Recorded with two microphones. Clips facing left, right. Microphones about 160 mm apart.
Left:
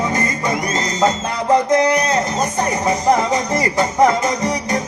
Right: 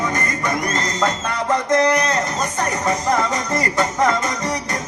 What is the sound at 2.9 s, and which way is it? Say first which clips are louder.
Music: left 4 dB; 20° left (ahead or behind).